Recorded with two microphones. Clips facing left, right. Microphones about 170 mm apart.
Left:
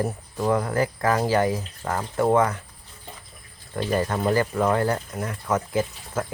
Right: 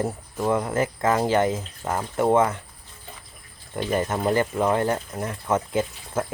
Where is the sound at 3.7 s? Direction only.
20° right (ahead or behind).